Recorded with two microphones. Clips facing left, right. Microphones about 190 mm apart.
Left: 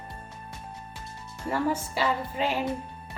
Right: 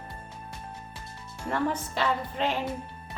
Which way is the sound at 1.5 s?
10° left (ahead or behind).